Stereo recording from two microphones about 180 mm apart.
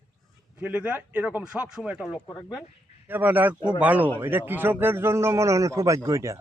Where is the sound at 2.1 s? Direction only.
15° left (ahead or behind).